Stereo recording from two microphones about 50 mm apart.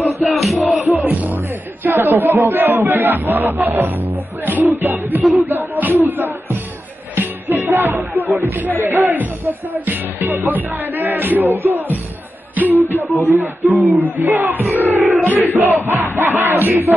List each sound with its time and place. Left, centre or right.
0.2 s music: centre
0.8 s music: right
3.0 s speech: right
7.2 s music: right
8.4 s speech: right
8.7 s speech: right
9.1 s speech: right
12.5 s music: right
12.9 s speech: left
13.2 s speech: right
13.7 s speech: right
14.3 s crowd: right